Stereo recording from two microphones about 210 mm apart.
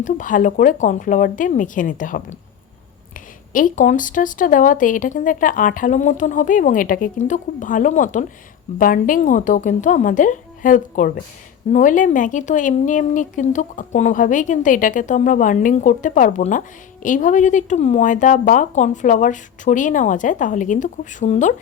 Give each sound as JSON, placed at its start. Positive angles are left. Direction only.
{"t": 0.0, "sound": "speech", "side_deg": 40}
{"t": 3.5, "sound": "speech", "side_deg": 40}